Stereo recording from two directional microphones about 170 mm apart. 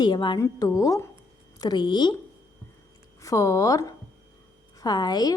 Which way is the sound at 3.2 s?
20° left (ahead or behind).